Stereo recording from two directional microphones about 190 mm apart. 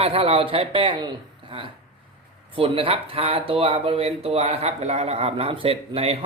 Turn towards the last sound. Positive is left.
turn(degrees=-30)  # may be behind; listen again after turning